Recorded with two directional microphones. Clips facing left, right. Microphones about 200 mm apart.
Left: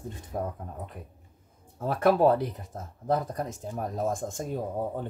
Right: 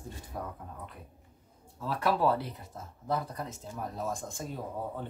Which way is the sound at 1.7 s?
50° left (ahead or behind).